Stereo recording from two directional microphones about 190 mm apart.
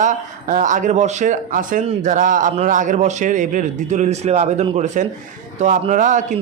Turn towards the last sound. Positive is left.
turn(degrees=-40)  # may be behind; listen again after turning